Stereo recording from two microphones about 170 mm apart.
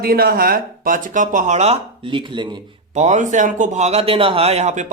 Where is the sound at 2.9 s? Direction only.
40° right (ahead or behind).